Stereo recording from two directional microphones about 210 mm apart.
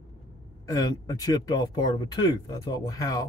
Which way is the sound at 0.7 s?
15° left (ahead or behind).